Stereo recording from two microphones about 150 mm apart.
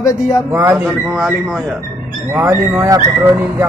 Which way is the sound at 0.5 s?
15° right (ahead or behind).